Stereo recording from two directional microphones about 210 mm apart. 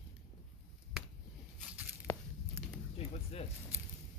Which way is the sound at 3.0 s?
30° left (ahead or behind).